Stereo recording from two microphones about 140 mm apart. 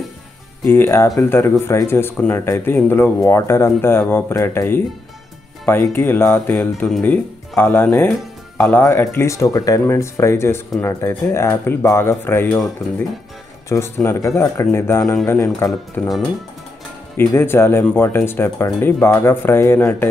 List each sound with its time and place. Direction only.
0.7 s speech: 15° left (ahead or behind)
13.7 s speech: 20° left (ahead or behind)
16.0 s speech: 5° left (ahead or behind)
17.3 s speech: 15° left (ahead or behind)